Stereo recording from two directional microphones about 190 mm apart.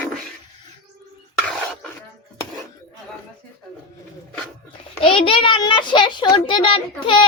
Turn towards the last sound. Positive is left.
turn(degrees=25)  # may be behind; listen again after turning